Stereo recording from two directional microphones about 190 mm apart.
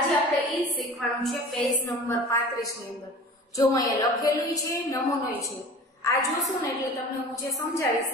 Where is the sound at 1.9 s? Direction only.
15° left (ahead or behind).